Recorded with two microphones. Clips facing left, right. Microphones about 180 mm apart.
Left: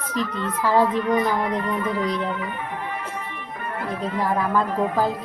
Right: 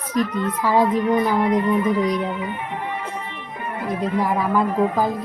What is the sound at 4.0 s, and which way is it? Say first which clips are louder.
Speech: right 2 dB; 15° right (ahead or behind).